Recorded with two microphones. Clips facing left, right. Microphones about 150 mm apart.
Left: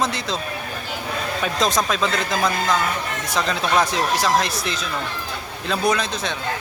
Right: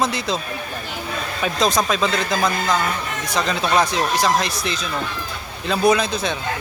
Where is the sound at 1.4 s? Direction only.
Centre (ahead or behind).